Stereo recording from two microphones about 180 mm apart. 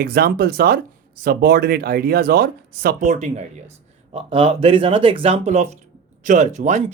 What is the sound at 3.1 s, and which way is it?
Speech, 40° right (ahead or behind).